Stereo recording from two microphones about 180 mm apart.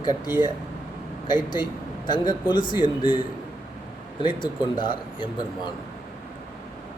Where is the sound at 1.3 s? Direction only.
25° left (ahead or behind).